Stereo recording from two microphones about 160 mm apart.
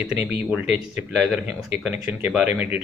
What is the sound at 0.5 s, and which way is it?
Speech, 5° right (ahead or behind).